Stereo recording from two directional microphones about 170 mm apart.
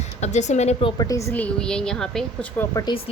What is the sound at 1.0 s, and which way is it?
A woman's voice, 20° left (ahead or behind).